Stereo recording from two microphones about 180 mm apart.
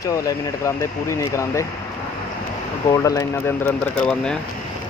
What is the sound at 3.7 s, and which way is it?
Speech, 5° left (ahead or behind).